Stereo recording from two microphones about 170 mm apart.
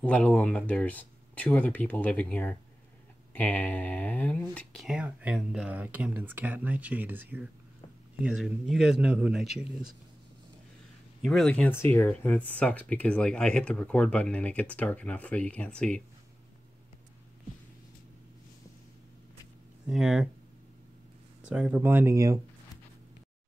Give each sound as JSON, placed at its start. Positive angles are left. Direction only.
{"t": 0.0, "sound": "speech", "side_deg": 5}
{"t": 4.8, "sound": "speech", "side_deg": -5}
{"t": 11.2, "sound": "speech", "side_deg": 0}
{"t": 11.7, "sound": "speech", "side_deg": 15}
{"t": 19.9, "sound": "speech", "side_deg": -5}
{"t": 21.5, "sound": "speech", "side_deg": -5}